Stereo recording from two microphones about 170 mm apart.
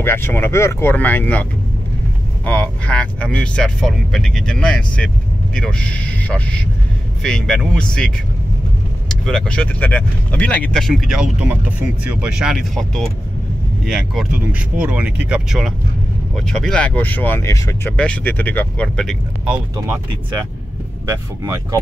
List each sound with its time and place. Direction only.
0.0 s speech: 15° left (ahead or behind)
9.1 s speech: 5° left (ahead or behind)
21.1 s speech: 20° right (ahead or behind)